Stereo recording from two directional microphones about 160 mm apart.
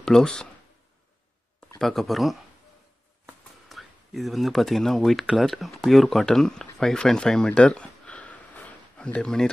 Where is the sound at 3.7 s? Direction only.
Centre (ahead or behind).